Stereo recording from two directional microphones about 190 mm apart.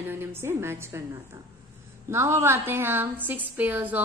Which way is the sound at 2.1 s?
15° right (ahead or behind).